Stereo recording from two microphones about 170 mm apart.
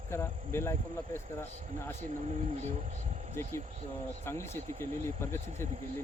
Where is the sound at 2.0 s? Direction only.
40° right (ahead or behind).